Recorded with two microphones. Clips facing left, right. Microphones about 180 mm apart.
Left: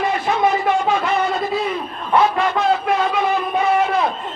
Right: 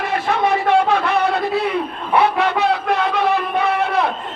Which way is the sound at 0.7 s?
65° right (ahead or behind).